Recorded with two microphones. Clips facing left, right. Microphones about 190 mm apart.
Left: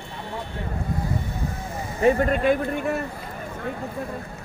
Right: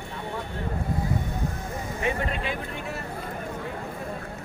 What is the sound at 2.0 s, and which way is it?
Speech, 45° left (ahead or behind).